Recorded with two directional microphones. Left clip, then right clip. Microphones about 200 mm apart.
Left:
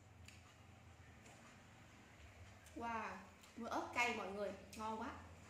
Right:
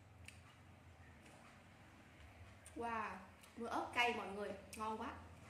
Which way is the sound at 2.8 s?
10° right (ahead or behind).